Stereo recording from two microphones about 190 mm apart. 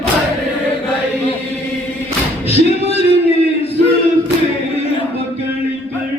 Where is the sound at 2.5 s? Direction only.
35° left (ahead or behind).